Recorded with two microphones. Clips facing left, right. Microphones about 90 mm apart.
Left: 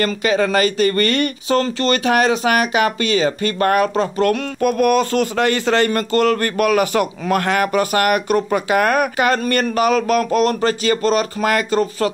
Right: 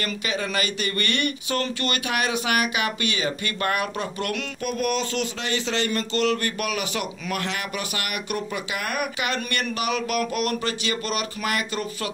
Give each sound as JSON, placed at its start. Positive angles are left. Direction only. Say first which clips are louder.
{"t": 0.0, "sound": "speech", "louder": "left 11 dB", "side_deg": 45}